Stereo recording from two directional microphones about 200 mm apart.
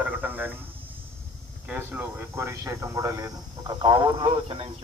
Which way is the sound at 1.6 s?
10° right (ahead or behind).